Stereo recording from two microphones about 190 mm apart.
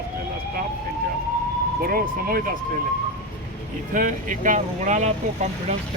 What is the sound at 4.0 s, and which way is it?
Speech, 45° right (ahead or behind).